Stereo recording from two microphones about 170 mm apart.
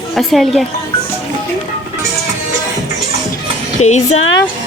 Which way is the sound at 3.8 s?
40° left (ahead or behind).